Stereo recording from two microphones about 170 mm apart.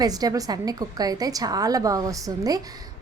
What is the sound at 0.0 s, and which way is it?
A woman's voice, 20° right (ahead or behind).